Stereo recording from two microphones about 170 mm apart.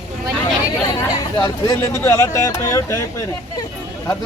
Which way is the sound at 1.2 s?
20° left (ahead or behind).